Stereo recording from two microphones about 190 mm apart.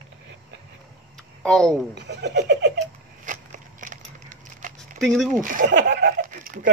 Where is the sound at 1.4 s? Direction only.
5° left (ahead or behind).